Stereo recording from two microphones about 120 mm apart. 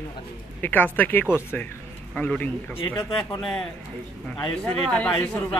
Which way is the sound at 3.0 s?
35° left (ahead or behind).